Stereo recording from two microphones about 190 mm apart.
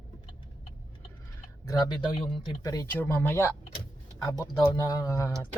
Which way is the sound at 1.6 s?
20° left (ahead or behind).